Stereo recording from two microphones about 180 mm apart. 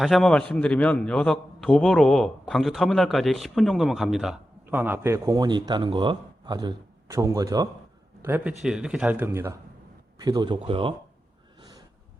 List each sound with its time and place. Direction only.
0.0 s a man's voice: centre (ahead or behind); by 7.7 s 20° right (ahead or behind)
8.2 s speech: 10° right (ahead or behind); by 10.9 s 30° right (ahead or behind)